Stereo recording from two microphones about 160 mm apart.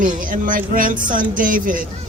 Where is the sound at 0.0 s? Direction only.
55° right (ahead or behind).